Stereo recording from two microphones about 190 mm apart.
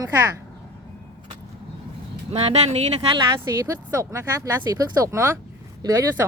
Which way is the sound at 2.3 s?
35° right (ahead or behind).